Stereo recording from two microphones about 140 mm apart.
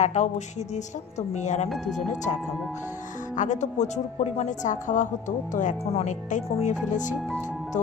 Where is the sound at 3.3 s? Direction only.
60° left (ahead or behind).